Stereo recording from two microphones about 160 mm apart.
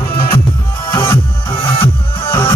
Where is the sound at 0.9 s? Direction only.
25° left (ahead or behind).